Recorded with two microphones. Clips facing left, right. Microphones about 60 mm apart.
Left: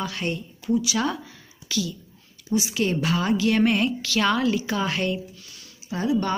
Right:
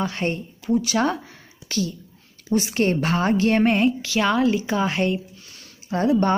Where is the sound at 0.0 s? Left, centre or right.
Right.